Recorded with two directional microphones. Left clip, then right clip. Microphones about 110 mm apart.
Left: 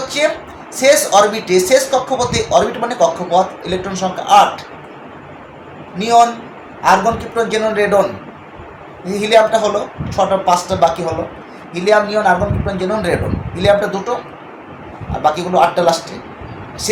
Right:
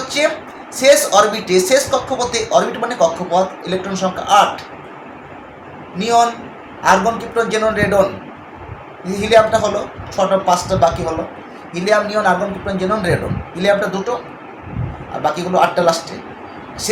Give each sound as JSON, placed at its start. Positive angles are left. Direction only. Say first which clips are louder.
{"t": 0.2, "sound": "speech", "louder": "even", "side_deg": 10}
{"t": 6.0, "sound": "speech", "louder": "left 3 dB", "side_deg": 15}
{"t": 9.0, "sound": "speech", "louder": "left 1 dB", "side_deg": 15}
{"t": 15.2, "sound": "speech", "louder": "left 2 dB", "side_deg": 15}